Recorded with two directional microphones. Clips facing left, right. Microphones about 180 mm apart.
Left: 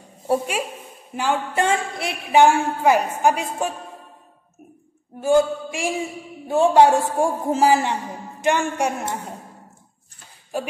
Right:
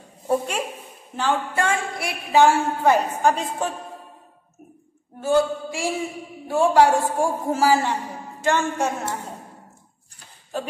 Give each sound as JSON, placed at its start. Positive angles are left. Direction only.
{"t": 0.3, "sound": "a woman's voice", "side_deg": 5}
{"t": 5.2, "sound": "a woman's voice", "side_deg": 15}
{"t": 10.5, "sound": "a woman's voice", "side_deg": 10}